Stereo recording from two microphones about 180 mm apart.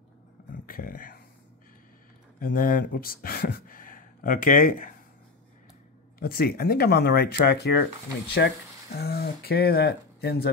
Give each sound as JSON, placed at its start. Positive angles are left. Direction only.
{"t": 0.5, "sound": "a sound", "side_deg": 50}
{"t": 2.4, "sound": "speech", "side_deg": 50}
{"t": 6.1, "sound": "speech", "side_deg": 55}